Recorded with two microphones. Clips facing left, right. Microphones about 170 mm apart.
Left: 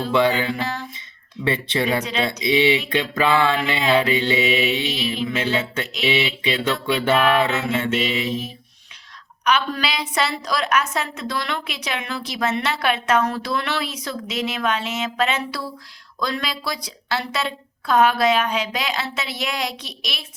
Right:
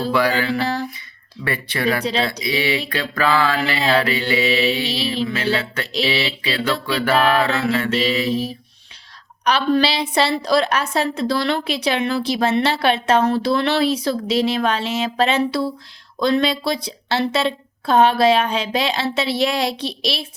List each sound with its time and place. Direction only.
0.1 s mantra: 20° left (ahead or behind)
0.6 s a sound: 35° right (ahead or behind)
1.5 s mantra: 25° left (ahead or behind)
4.4 s a woman's voice: 35° right (ahead or behind)
5.5 s mantra: 20° left (ahead or behind)
6.1 s a woman's voice: 35° right (ahead or behind)
6.8 s mantra: 25° left (ahead or behind)
7.9 s a woman's voice: 35° right (ahead or behind)